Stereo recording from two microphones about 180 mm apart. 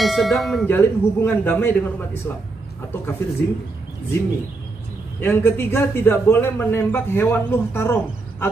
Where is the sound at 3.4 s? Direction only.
65° left (ahead or behind).